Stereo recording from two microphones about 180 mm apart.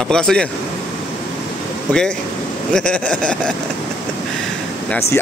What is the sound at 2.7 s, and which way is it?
Speech, 5° left (ahead or behind).